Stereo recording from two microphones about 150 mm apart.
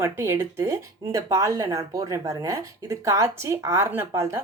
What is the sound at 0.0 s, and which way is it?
Speech, 15° right (ahead or behind).